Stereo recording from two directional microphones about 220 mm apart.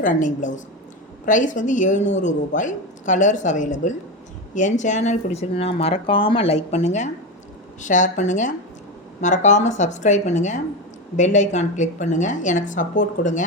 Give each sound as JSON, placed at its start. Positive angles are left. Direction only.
{"t": 0.0, "sound": "speech", "side_deg": 35}